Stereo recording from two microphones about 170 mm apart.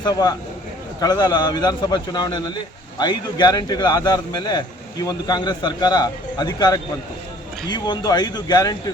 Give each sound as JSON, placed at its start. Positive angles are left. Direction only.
{"t": 0.0, "sound": "a man's voice", "side_deg": 20}